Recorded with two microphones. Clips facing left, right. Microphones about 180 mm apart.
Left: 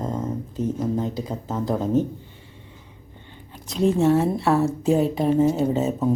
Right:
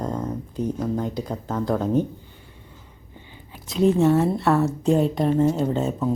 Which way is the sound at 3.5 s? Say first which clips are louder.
Right 2 dB; centre (ahead or behind).